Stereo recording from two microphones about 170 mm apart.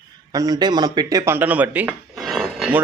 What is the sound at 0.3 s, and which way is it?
Speech, 20° right (ahead or behind).